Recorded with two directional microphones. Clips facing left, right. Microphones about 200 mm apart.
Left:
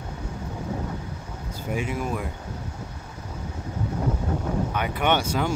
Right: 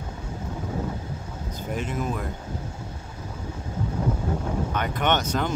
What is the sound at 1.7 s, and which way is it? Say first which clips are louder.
Speech: left 1 dB; 10° left (ahead or behind).